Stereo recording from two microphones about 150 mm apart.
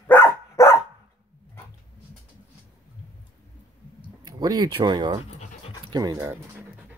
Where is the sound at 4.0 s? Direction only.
25° right (ahead or behind).